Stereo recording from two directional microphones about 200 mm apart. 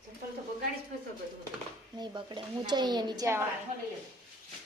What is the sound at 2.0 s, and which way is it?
A woman's voice, 25° right (ahead or behind).